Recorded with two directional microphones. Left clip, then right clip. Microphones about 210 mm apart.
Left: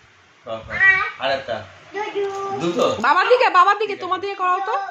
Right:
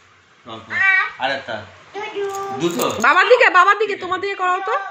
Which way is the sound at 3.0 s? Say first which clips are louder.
Right 4 dB; 5° right (ahead or behind).